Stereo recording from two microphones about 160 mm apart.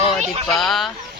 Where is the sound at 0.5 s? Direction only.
Centre (ahead or behind).